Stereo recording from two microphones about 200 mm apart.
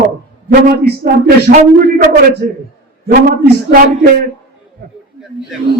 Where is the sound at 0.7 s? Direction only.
45° right (ahead or behind).